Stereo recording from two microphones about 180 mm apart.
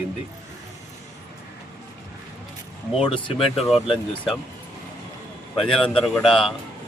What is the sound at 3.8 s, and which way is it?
Speech, centre (ahead or behind).